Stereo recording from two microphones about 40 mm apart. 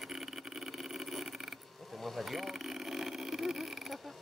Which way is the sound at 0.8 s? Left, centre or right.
Centre.